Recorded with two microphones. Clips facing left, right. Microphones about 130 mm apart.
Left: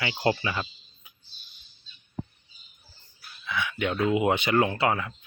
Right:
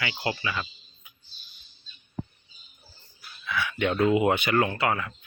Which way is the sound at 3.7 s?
5° left (ahead or behind).